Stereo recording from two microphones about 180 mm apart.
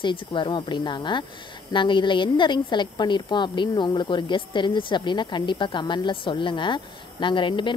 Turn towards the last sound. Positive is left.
turn(degrees=25)  # may be behind; listen again after turning